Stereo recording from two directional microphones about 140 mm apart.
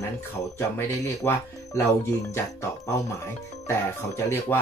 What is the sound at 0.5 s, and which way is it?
Speech, 20° left (ahead or behind).